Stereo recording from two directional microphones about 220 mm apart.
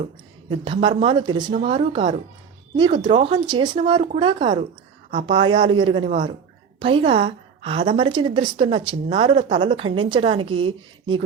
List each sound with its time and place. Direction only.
0.5 s a woman's voice: 20° right (ahead or behind)